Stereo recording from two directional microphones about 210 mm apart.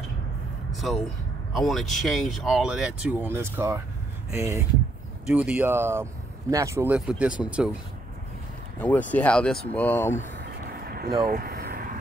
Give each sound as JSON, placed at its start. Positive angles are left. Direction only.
{"t": 0.7, "sound": "speech", "side_deg": 0}
{"t": 8.7, "sound": "speech", "side_deg": 5}
{"t": 10.6, "sound": "vehicle", "side_deg": -45}